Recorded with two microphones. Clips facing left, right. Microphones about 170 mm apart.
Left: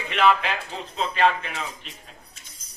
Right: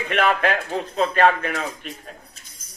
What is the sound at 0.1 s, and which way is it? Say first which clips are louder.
A man's voice: right 1 dB; 55° right (ahead or behind).